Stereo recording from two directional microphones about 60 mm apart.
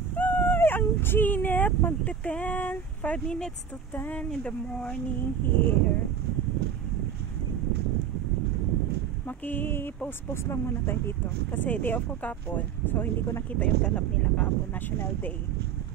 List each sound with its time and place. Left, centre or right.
0.1 s dog: left
0.6 s a sound: left
2.2 s speech: left
4.3 s speech: centre
5.4 s speech: left
9.5 s speech: left
13.6 s speech: left